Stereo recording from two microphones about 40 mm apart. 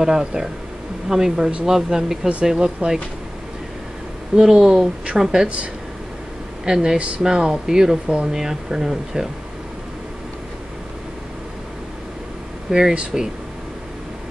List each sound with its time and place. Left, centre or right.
0.0 s a woman's voice: centre
4.4 s a woman's voice: centre
6.6 s a woman's voice: centre
12.7 s a woman's voice: centre